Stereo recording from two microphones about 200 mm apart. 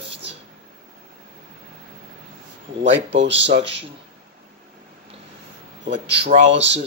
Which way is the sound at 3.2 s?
60° right (ahead or behind).